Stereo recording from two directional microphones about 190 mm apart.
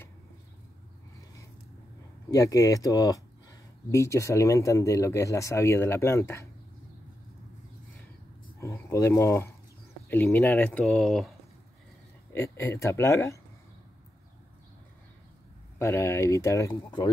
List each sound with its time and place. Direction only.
2.3 s speech: 15° left (ahead or behind)
8.5 s speech: 15° left (ahead or behind)
12.3 s speech: 15° left (ahead or behind)
15.8 s speech: 15° left (ahead or behind)